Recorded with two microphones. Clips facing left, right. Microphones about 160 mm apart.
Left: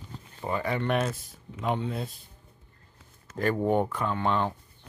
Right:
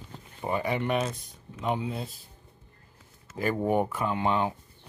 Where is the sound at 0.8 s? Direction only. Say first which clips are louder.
Left 1 dB; centre (ahead or behind).